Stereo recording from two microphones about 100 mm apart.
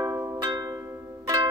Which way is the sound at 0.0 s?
30° right (ahead or behind).